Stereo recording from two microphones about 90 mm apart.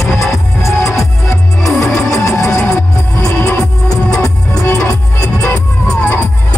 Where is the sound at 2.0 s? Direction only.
35° left (ahead or behind).